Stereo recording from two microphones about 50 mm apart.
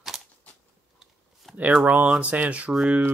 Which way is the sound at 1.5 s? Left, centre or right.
Right.